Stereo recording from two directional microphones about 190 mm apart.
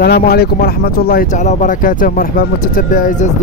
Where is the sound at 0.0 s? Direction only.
55° left (ahead or behind).